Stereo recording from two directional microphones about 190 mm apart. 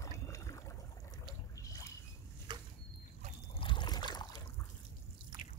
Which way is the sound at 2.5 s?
25° right (ahead or behind).